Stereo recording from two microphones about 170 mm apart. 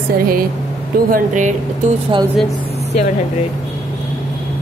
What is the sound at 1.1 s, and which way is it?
Speech, 45° right (ahead or behind).